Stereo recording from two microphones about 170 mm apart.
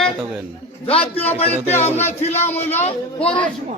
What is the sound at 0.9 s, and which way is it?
Speech, 35° left (ahead or behind).